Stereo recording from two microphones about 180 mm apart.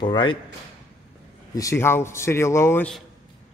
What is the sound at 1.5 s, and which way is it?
Speech, 15° left (ahead or behind).